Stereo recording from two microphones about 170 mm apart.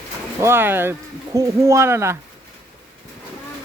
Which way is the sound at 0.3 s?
15° right (ahead or behind).